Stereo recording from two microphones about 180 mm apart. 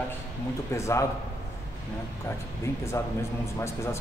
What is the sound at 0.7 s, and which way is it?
Speech, 15° left (ahead or behind).